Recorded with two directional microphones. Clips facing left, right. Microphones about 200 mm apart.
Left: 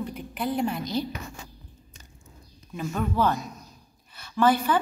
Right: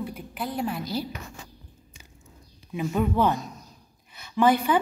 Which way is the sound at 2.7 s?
15° right (ahead or behind).